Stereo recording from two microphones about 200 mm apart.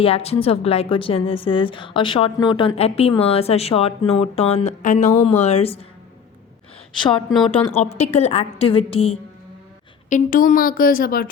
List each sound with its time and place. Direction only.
0.0 s a woman's voice: 30° left (ahead or behind)
7.6 s a woman's voice: 30° left (ahead or behind)
10.1 s a woman's voice: 40° left (ahead or behind)